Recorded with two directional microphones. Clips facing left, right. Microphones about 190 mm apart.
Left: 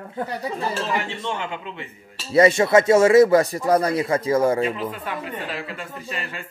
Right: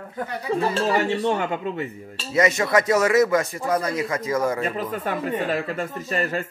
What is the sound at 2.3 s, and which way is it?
Speech, 30° left (ahead or behind).